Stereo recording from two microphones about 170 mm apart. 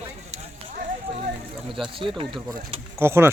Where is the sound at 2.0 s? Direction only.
30° right (ahead or behind).